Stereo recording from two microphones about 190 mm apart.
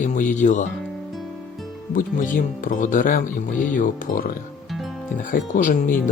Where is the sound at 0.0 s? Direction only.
40° left (ahead or behind).